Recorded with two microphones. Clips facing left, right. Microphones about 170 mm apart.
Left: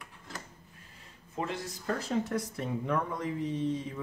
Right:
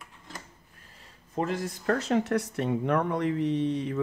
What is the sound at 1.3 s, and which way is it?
Speech, 45° right (ahead or behind).